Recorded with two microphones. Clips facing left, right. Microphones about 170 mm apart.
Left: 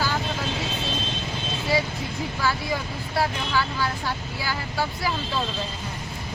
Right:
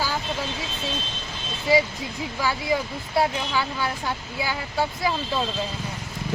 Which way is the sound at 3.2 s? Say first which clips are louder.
Right 2 dB; 20° right (ahead or behind).